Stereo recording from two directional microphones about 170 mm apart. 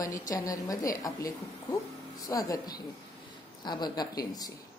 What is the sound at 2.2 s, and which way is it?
Speech, 20° left (ahead or behind).